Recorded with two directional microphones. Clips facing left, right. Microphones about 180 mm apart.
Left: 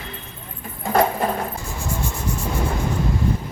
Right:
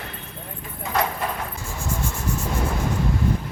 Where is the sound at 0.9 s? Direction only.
40° left (ahead or behind).